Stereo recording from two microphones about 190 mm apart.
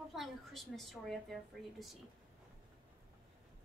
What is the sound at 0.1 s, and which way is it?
A woman's voice, centre (ahead or behind).